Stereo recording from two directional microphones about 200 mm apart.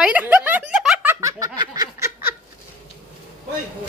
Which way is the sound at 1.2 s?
20° right (ahead or behind).